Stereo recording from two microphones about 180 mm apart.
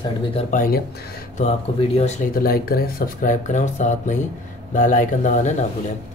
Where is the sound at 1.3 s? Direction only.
35° left (ahead or behind).